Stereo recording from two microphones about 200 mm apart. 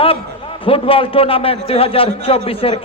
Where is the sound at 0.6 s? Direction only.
25° left (ahead or behind).